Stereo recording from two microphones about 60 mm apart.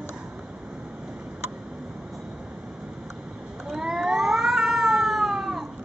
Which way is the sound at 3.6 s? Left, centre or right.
Centre.